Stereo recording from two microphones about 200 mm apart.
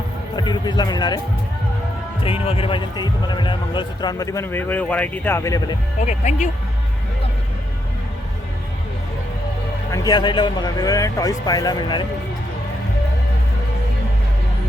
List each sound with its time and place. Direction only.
0.3 s a man's voice: 20° left (ahead or behind)
2.2 s a man's voice: 30° left (ahead or behind)
6.0 s speech: 35° left (ahead or behind)
9.9 s a man's voice: 20° left (ahead or behind)